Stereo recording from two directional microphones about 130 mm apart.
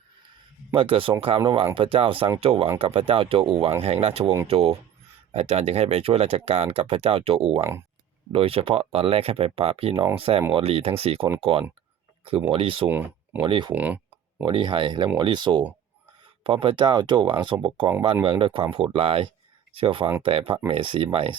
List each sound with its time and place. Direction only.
0.7 s speech: 45° right (ahead or behind)
12.9 s speech: 15° right (ahead or behind)
13.4 s speech: 40° right (ahead or behind)
13.7 s clicking: 10° right (ahead or behind)
14.4 s speech: 40° right (ahead or behind)